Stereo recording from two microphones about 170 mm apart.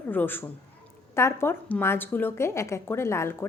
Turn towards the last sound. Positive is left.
turn(degrees=15)  # may be behind; listen again after turning